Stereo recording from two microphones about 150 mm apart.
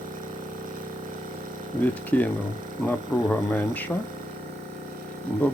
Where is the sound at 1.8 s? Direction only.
10° left (ahead or behind).